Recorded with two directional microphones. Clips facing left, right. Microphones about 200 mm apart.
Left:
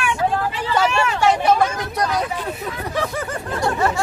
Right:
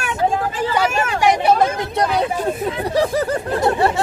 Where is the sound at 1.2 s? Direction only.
15° right (ahead or behind).